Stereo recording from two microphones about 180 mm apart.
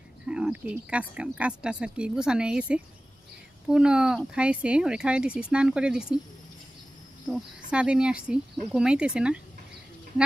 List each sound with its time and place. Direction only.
0.3 s speech: 5° right (ahead or behind)
7.3 s speech: 5° right (ahead or behind)